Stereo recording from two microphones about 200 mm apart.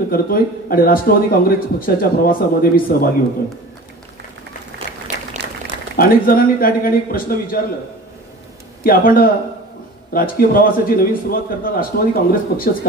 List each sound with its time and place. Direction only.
0.1 s speech: 45° left (ahead or behind)
5.9 s speech: 45° left (ahead or behind)
8.8 s speech: 45° left (ahead or behind)